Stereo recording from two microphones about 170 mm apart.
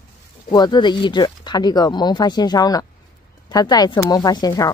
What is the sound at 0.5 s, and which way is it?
Speech, 25° left (ahead or behind).